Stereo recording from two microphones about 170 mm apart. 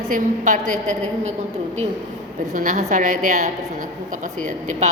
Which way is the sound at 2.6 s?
50° right (ahead or behind).